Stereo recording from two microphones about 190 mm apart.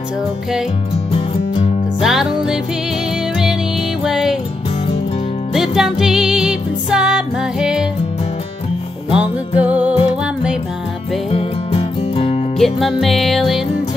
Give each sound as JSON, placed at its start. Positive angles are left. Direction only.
{"t": 1.1, "sound": "music", "side_deg": 30}
{"t": 2.0, "sound": "music", "side_deg": 0}
{"t": 4.0, "sound": "music", "side_deg": -5}
{"t": 5.5, "sound": "music", "side_deg": 0}
{"t": 9.1, "sound": "music", "side_deg": -5}
{"t": 11.3, "sound": "music", "side_deg": 30}
{"t": 12.5, "sound": "music", "side_deg": 0}